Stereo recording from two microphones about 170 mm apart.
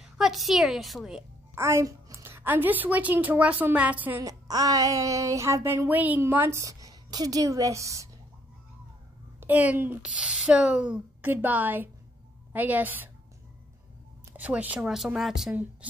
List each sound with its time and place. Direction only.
0.2 s a woman's voice: centre (ahead or behind)
1.5 s a woman's voice: 15° right (ahead or behind)
9.4 s a woman's voice: 10° right (ahead or behind)
14.3 s a woman's voice: 10° right (ahead or behind)